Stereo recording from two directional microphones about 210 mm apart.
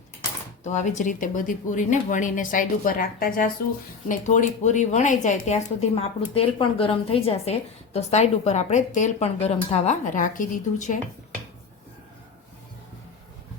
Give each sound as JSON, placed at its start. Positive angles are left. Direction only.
{"t": 0.6, "sound": "speech", "side_deg": 35}